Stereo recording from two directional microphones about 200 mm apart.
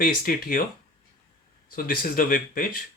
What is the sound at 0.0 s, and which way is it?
Speech, 45° left (ahead or behind).